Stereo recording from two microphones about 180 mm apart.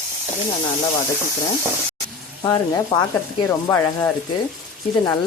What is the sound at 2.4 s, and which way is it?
Frying, 20° left (ahead or behind).